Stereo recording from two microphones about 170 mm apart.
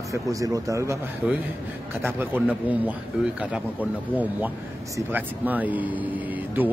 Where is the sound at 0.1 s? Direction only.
20° right (ahead or behind).